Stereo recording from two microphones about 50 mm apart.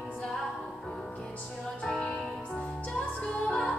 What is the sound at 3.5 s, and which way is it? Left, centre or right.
Music, centre.